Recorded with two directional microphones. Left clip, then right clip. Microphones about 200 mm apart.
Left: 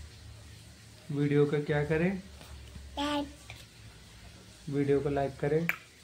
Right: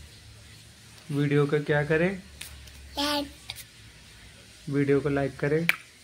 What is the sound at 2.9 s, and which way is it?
Speech, centre (ahead or behind).